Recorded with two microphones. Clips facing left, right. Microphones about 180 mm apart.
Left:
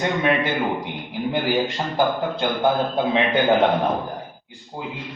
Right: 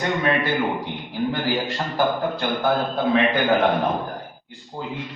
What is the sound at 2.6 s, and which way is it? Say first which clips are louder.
A man's voice: left 2 dB; 20° left (ahead or behind).